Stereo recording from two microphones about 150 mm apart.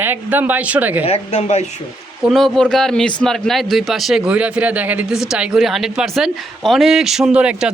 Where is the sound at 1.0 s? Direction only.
45° left (ahead or behind).